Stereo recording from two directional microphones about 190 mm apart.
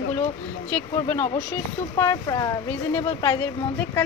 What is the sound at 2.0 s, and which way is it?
Speech, 15° left (ahead or behind).